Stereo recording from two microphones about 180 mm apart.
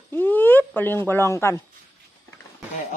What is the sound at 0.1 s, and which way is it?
Speech, 10° left (ahead or behind).